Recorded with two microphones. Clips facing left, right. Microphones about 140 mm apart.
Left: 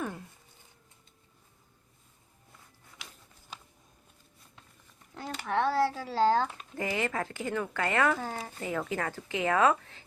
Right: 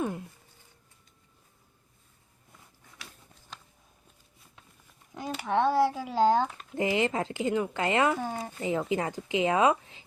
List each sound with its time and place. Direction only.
5.1 s speech: 15° right (ahead or behind)